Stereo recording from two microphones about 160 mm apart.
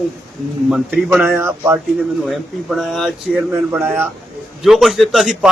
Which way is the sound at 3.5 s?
15° right (ahead or behind).